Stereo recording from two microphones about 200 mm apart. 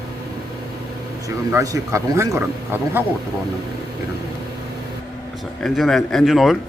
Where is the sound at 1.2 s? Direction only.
15° right (ahead or behind).